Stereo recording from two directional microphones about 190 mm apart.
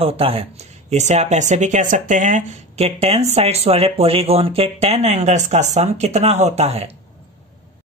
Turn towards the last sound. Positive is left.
turn(degrees=-35)  # may be behind; listen again after turning